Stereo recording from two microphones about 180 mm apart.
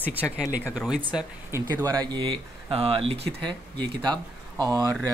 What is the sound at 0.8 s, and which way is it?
Speech, 5° right (ahead or behind).